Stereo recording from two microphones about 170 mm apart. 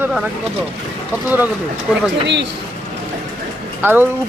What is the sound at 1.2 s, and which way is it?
Speech, 10° right (ahead or behind).